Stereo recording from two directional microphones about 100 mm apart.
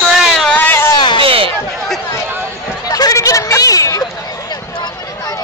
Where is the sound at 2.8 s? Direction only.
40° left (ahead or behind).